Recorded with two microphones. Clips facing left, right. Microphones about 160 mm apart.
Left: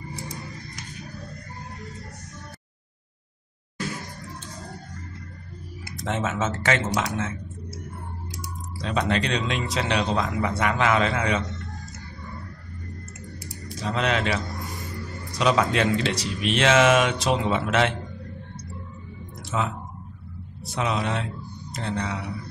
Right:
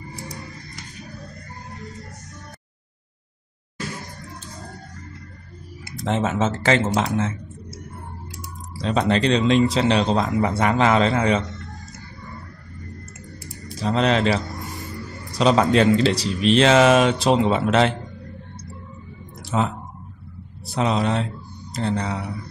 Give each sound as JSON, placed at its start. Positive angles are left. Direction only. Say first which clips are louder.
{"t": 5.9, "sound": "speech", "louder": "right 5 dB", "side_deg": -30}
{"t": 8.8, "sound": "speech", "louder": "right 5 dB", "side_deg": -30}
{"t": 13.8, "sound": "speech", "louder": "right 6 dB", "side_deg": -30}
{"t": 20.6, "sound": "speech", "louder": "right 5 dB", "side_deg": -35}